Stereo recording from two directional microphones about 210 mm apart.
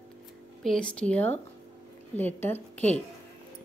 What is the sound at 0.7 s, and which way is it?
Speech, 5° left (ahead or behind).